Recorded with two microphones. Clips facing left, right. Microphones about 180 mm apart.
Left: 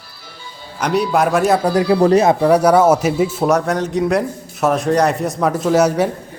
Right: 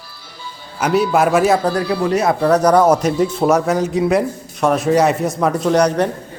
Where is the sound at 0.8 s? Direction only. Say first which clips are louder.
Right 1 dB; 5° right (ahead or behind).